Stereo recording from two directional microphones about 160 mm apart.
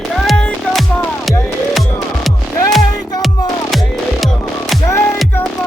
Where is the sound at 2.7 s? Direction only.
Centre (ahead or behind).